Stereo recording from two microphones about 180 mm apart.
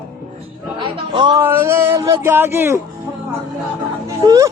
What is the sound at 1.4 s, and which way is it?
Speech, 15° right (ahead or behind).